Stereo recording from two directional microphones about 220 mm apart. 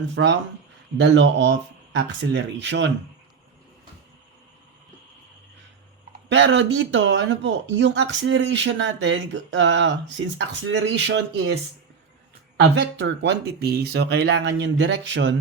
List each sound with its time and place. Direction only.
0.1 s speech: 55° right (ahead or behind)
6.2 s speech: 55° right (ahead or behind)
13.0 s speech: 55° right (ahead or behind)